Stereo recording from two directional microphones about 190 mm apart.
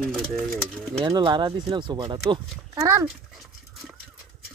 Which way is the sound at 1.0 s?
25° right (ahead or behind).